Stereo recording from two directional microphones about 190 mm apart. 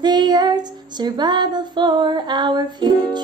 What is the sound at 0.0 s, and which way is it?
Female singing, 20° right (ahead or behind).